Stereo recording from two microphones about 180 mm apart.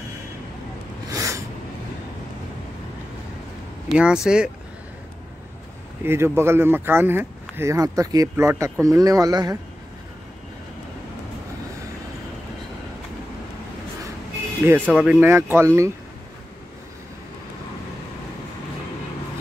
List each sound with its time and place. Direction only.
1.1 s a sound: 15° right (ahead or behind)
3.9 s speech: 5° right (ahead or behind)
6.0 s speech: 15° right (ahead or behind)
14.6 s speech: 10° right (ahead or behind)